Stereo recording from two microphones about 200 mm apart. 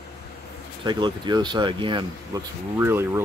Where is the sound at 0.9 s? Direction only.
20° right (ahead or behind).